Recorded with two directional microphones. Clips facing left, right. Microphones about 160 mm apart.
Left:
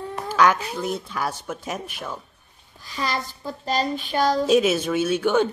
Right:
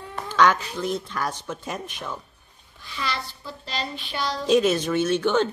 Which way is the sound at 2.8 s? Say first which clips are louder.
Left 3 dB; 40° left (ahead or behind).